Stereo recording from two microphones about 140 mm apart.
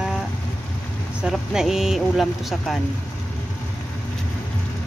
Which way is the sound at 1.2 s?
5° right (ahead or behind).